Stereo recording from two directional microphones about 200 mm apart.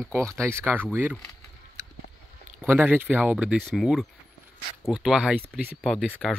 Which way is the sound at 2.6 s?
10° right (ahead or behind).